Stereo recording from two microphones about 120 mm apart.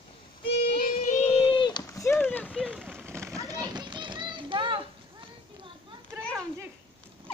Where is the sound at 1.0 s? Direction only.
70° left (ahead or behind).